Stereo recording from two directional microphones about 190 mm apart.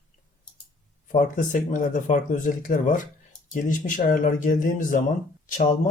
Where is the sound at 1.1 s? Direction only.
40° left (ahead or behind).